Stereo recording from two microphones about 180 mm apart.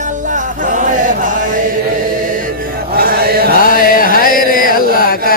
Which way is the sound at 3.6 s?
50° left (ahead or behind).